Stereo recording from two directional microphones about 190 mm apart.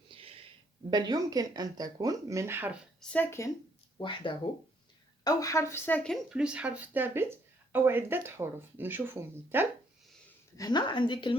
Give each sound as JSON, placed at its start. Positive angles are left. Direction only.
{"t": 0.1, "sound": "a sound", "side_deg": -30}
{"t": 0.9, "sound": "speech", "side_deg": -20}
{"t": 3.0, "sound": "speech", "side_deg": 10}
{"t": 3.9, "sound": "speech", "side_deg": 25}
{"t": 10.6, "sound": "a woman's voice", "side_deg": 20}